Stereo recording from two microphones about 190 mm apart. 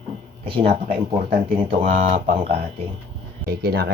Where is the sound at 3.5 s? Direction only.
55° right (ahead or behind).